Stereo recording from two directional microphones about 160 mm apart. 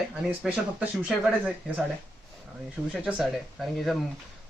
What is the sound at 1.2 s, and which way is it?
Speech, 5° right (ahead or behind).